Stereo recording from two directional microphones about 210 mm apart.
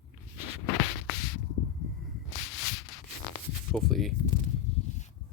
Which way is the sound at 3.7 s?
Centre (ahead or behind).